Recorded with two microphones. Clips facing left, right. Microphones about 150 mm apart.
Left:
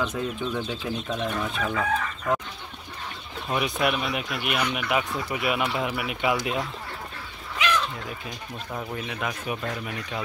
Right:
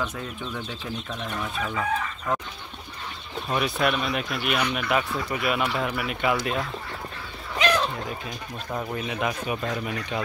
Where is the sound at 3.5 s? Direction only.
15° left (ahead or behind).